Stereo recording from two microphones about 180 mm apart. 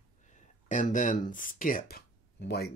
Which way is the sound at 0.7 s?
45° left (ahead or behind).